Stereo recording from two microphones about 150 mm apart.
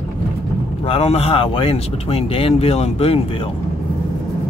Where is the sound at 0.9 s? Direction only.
40° left (ahead or behind).